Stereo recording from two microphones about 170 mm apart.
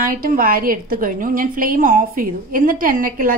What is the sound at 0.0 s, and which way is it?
A woman's voice, 55° right (ahead or behind).